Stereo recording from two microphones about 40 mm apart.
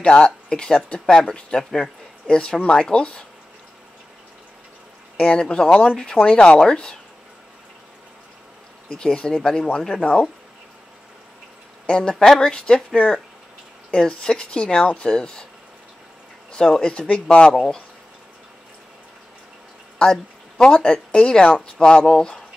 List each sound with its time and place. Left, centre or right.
0.0 s speech: left
5.2 s speech: left
6.6 s speech: centre
8.8 s speech: left
11.9 s speech: left
16.5 s speech: centre
17.1 s speech: left
20.0 s speech: left